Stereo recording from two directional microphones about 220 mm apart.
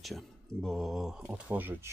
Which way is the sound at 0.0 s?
Centre (ahead or behind).